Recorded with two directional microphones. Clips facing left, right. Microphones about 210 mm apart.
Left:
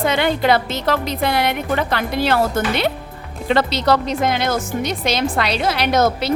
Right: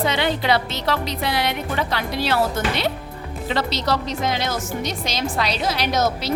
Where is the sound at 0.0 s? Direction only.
50° left (ahead or behind).